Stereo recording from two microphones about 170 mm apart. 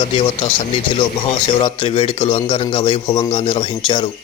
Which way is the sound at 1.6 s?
30° left (ahead or behind).